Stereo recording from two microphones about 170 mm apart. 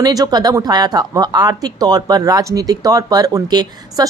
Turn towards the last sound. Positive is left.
turn(degrees=-25)  # may be behind; listen again after turning